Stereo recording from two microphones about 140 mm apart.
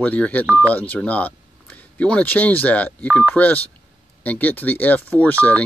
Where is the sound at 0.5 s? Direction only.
15° right (ahead or behind).